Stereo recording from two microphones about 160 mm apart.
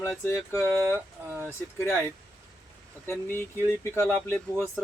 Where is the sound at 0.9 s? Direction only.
10° right (ahead or behind).